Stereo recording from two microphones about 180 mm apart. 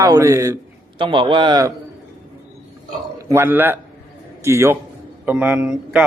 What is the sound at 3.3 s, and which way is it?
A man's voice, 10° right (ahead or behind).